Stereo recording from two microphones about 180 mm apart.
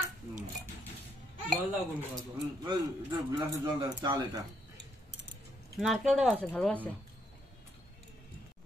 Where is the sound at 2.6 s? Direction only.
25° right (ahead or behind).